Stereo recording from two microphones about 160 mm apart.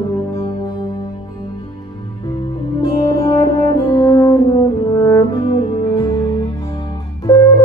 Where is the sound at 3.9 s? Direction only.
20° left (ahead or behind).